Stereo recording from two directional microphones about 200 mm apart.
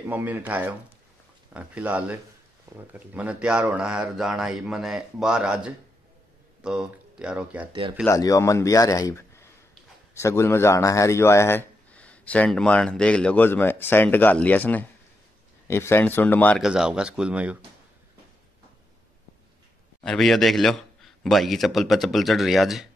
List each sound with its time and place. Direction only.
0.1 s speech: 10° right (ahead or behind)
8.1 s a man's voice: 15° left (ahead or behind)
16.6 s speech: 5° right (ahead or behind)
20.0 s speech: centre (ahead or behind)